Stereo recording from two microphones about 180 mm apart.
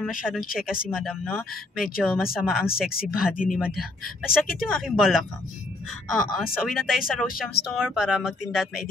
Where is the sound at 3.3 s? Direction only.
50° left (ahead or behind).